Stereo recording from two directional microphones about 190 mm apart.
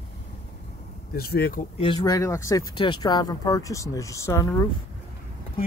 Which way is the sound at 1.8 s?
20° left (ahead or behind).